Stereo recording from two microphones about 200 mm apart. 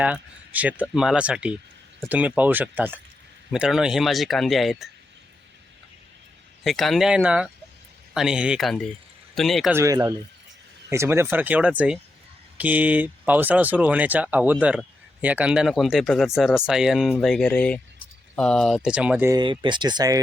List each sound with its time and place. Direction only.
0.0 s speech: 5° right (ahead or behind)
6.7 s speech: centre (ahead or behind)
9.7 s speech: 15° right (ahead or behind)
19.4 s speech: 25° right (ahead or behind)